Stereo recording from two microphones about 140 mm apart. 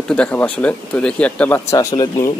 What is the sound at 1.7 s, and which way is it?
Speech, 25° left (ahead or behind).